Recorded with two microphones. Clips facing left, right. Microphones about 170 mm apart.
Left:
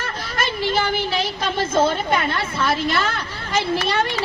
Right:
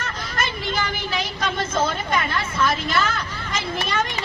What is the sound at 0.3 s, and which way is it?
A woman's voice, 30° left (ahead or behind).